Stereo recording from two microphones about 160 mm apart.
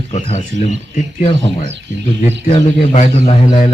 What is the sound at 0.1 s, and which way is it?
Speech, 40° left (ahead or behind).